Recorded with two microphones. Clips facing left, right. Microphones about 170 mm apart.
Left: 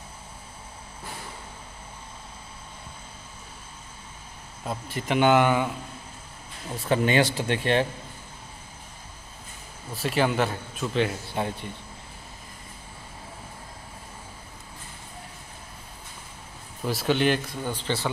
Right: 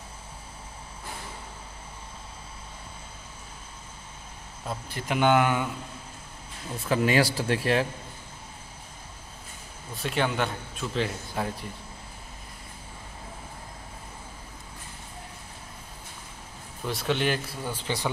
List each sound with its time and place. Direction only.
4.6 s a man's voice: centre (ahead or behind)
7.0 s a man's voice: centre (ahead or behind)
9.9 s a man's voice: centre (ahead or behind)
11.3 s speech: 30° left (ahead or behind)
16.8 s a man's voice: centre (ahead or behind)